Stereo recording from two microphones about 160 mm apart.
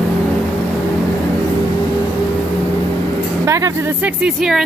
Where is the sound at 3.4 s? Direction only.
20° right (ahead or behind).